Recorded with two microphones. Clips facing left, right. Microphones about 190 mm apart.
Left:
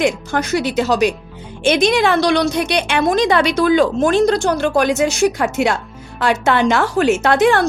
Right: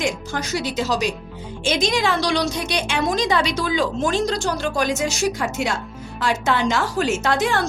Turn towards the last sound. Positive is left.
turn(degrees=60)  # may be behind; listen again after turning